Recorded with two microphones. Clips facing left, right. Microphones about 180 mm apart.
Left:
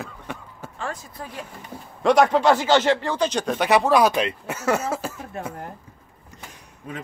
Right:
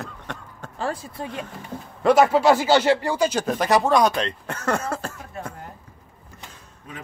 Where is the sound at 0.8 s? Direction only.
30° right (ahead or behind).